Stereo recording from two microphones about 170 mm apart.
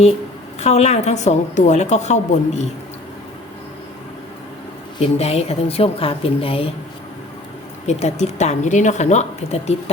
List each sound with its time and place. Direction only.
0.6 s a woman's voice: 40° left (ahead or behind)
4.9 s a woman's voice: 35° left (ahead or behind)
7.9 s a woman's voice: 40° left (ahead or behind)